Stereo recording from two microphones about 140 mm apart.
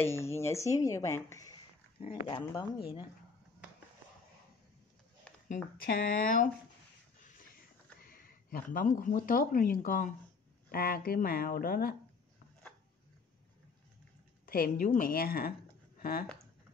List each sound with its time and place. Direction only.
0.0 s speech: 20° left (ahead or behind)
2.2 s speech: 40° left (ahead or behind)
5.5 s speech: 85° left
8.1 s speech: 90° left; by 10.1 s 75° left (ahead or behind)
10.7 s speech: 90° left
14.4 s speech: 85° left